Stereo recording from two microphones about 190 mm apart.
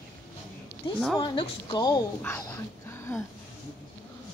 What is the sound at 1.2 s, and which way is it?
Speech, 25° left (ahead or behind).